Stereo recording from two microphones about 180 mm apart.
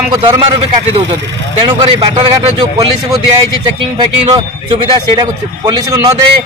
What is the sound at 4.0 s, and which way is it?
Speech, 25° right (ahead or behind).